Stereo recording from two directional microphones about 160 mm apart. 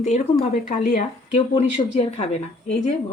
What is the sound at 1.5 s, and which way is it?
Speech, 30° left (ahead or behind).